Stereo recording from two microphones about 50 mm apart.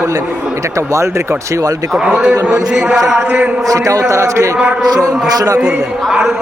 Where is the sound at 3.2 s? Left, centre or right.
Right.